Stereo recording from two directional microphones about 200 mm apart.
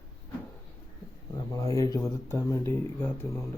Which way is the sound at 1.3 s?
15° left (ahead or behind).